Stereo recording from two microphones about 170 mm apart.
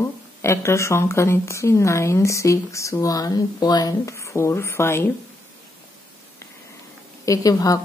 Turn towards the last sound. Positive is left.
turn(degrees=20)  # may be behind; listen again after turning